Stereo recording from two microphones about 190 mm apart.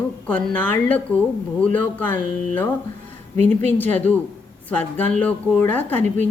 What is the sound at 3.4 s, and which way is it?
Speech, 35° right (ahead or behind).